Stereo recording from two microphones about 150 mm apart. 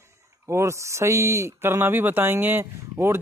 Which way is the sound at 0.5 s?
20° right (ahead or behind).